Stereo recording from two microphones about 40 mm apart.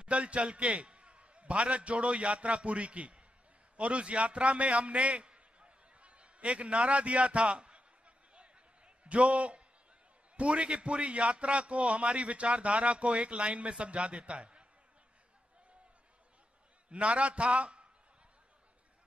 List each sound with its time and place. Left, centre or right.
0.0 s a man's voice: right
8.4 s a sound: right
10.3 s a man's voice: right
16.9 s a man's voice: right